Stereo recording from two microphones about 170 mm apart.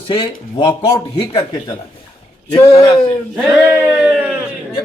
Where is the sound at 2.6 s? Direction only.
20° left (ahead or behind).